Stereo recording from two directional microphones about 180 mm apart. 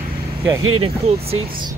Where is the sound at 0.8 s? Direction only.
30° right (ahead or behind).